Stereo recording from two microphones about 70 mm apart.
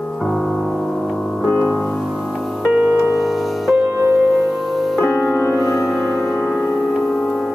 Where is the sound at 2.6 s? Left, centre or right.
Centre.